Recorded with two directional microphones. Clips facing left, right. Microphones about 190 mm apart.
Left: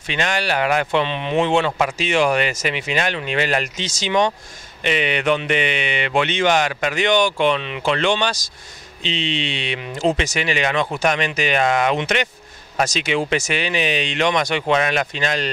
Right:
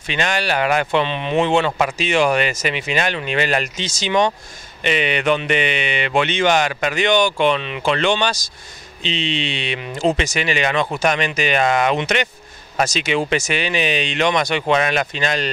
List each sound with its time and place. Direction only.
0.1 s speech: 15° right (ahead or behind)